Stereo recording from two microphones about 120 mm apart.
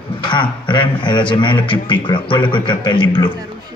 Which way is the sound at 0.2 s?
40° left (ahead or behind).